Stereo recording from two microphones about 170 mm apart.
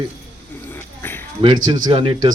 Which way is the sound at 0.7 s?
15° left (ahead or behind).